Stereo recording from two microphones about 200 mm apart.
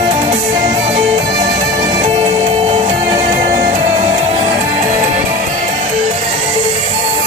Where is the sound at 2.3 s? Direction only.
35° right (ahead or behind).